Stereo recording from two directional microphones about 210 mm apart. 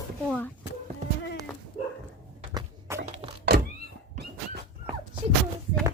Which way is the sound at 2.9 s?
10° right (ahead or behind).